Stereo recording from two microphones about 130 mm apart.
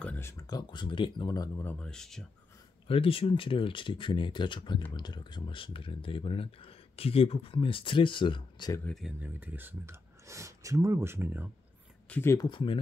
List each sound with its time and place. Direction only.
0.0 s speech: 15° left (ahead or behind); by 1.5 s 30° left (ahead or behind)
1.6 s speech: 10° left (ahead or behind)
2.9 s speech: 45° left (ahead or behind)
8.8 s speech: centre (ahead or behind)
9.2 s speech: 15° right (ahead or behind)
12.1 s speech: 20° left (ahead or behind)
12.4 s speech: 40° left (ahead or behind)